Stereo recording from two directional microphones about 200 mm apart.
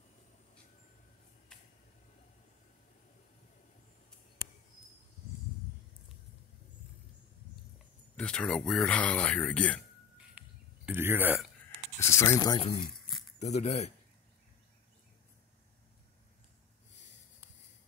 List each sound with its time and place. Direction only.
8.2 s speech: 5° left (ahead or behind)
10.4 s a sound: 5° right (ahead or behind)
10.9 s speech: 10° right (ahead or behind)
12.0 s speech: 15° left (ahead or behind)
13.4 s speech: 35° left (ahead or behind)